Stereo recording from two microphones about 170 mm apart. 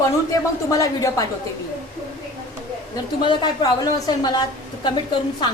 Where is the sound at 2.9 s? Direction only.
25° left (ahead or behind).